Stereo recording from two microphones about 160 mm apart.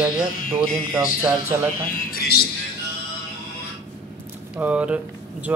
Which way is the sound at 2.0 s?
65° left (ahead or behind).